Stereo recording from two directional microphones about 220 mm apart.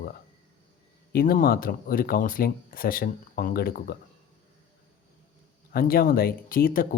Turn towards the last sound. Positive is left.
turn(degrees=40)  # may be behind; listen again after turning